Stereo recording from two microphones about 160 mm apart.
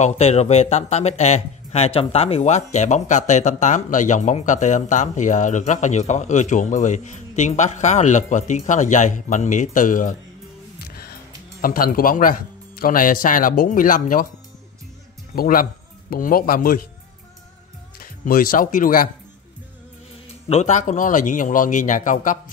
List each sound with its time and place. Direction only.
0.0 s speech: 45° left (ahead or behind)
10.8 s music: 75° left (ahead or behind)
11.6 s speech: 60° left (ahead or behind)
15.3 s speech: 60° left (ahead or behind)
18.0 s speech: 60° left (ahead or behind)
20.4 s speech: 45° left (ahead or behind)